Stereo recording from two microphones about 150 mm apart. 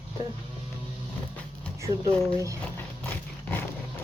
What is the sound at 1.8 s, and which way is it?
Speech, 20° right (ahead or behind).